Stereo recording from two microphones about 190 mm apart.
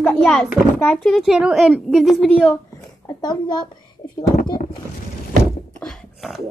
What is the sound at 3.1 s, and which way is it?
Speech, 20° left (ahead or behind).